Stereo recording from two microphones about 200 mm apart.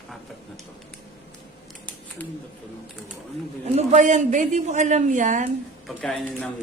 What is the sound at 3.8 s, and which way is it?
A man's voice, 35° right (ahead or behind).